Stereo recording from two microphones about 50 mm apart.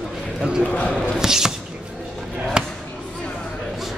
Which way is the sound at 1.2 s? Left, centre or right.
Centre.